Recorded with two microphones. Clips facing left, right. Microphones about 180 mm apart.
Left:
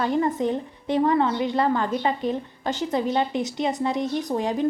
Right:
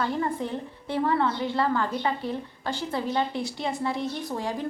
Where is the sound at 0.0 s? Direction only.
20° left (ahead or behind).